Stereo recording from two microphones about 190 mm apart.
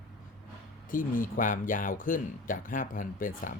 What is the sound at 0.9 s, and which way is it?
Speech, 45° left (ahead or behind).